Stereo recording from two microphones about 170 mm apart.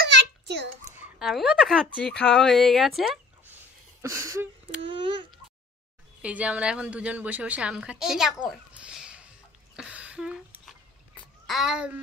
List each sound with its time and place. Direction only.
0.0 s a sound: 85° right
1.2 s speech: centre (ahead or behind)
4.0 s a woman's voice: 15° right (ahead or behind)
4.8 s speech: 30° right (ahead or behind)
6.2 s a woman's voice: 5° right (ahead or behind)
9.8 s a sound: 5° right (ahead or behind)
11.4 s speech: centre (ahead or behind)